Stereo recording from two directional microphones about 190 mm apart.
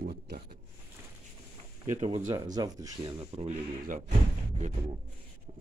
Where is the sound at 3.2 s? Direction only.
30° right (ahead or behind).